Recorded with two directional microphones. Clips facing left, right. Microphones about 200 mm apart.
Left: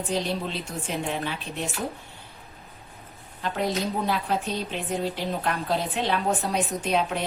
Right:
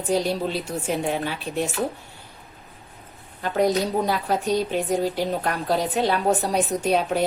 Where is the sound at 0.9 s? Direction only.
40° right (ahead or behind).